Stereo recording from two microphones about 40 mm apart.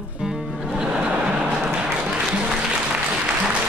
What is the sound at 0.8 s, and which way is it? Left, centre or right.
Vehicle, right.